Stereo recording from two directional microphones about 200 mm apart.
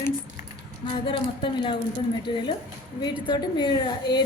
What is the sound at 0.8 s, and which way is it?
A woman's voice, 25° left (ahead or behind).